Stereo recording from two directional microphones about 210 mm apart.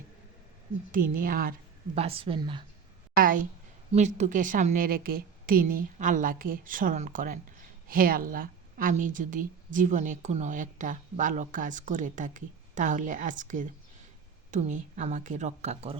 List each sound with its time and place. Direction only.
0.9 s a woman's voice: 40° right (ahead or behind)
2.0 s a woman's voice: 25° right (ahead or behind)
3.2 s a woman's voice: 40° right (ahead or behind)